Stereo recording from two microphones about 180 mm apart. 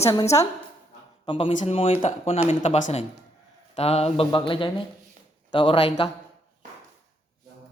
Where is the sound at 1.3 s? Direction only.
30° left (ahead or behind).